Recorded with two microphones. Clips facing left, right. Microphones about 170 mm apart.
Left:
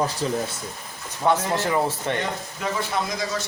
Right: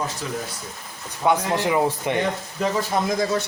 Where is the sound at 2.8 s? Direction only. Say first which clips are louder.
Right 5 dB; 55° right (ahead or behind).